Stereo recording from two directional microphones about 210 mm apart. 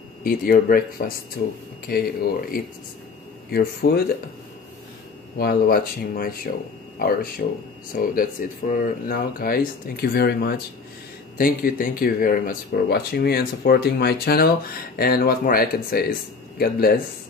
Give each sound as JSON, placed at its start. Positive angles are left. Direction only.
{"t": 0.2, "sound": "speech", "side_deg": 40}
{"t": 5.4, "sound": "speech", "side_deg": 45}